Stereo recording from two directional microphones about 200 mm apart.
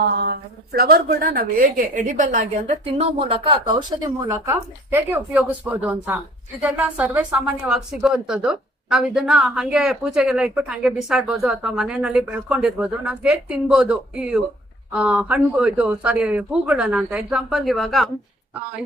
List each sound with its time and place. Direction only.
0.2 s a woman's voice: 50° right (ahead or behind); by 18.1 s centre (ahead or behind)